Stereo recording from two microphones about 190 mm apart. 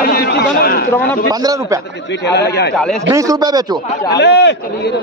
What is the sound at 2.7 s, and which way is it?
Speech, 5° left (ahead or behind).